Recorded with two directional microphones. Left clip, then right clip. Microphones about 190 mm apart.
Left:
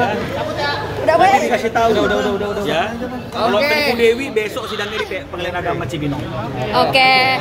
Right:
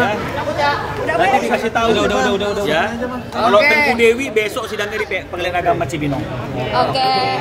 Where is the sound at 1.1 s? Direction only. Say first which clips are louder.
Left 3 dB; 15° left (ahead or behind).